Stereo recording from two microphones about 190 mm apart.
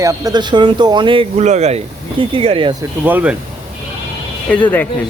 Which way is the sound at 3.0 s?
10° right (ahead or behind).